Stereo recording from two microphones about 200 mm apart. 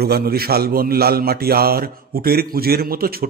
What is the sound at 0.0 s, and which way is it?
A man's voice, 50° right (ahead or behind).